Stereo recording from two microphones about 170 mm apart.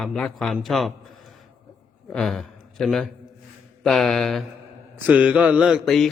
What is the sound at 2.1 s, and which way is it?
A man's voice, centre (ahead or behind).